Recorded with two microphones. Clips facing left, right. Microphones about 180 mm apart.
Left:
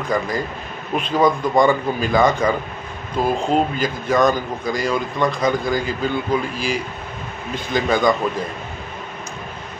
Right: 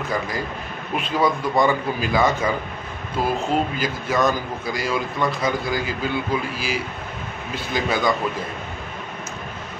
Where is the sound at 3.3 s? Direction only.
30° left (ahead or behind).